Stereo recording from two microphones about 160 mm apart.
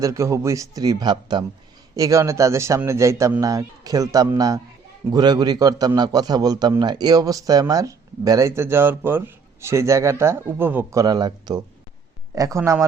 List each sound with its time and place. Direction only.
0.0 s a man's voice: 20° right (ahead or behind)
11.0 s a man's voice: 25° right (ahead or behind)